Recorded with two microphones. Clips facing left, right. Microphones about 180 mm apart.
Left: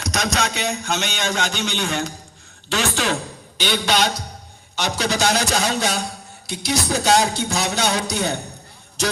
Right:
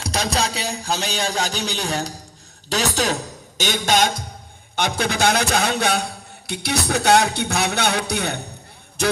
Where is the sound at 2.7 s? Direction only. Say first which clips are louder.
Even; 40° right (ahead or behind); by 9.1 s 55° right (ahead or behind).